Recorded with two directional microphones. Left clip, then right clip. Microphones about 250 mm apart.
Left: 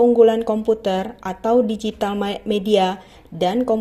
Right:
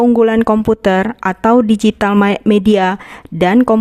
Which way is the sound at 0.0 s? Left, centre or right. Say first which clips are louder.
Right 2 dB; right.